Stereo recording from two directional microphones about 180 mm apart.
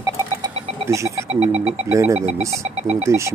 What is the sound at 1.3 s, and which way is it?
Speech, 35° right (ahead or behind).